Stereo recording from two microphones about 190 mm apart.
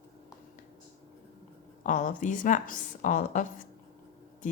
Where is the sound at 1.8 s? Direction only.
45° left (ahead or behind).